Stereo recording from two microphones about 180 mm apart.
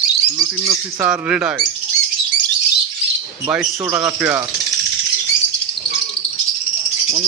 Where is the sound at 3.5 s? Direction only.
10° right (ahead or behind).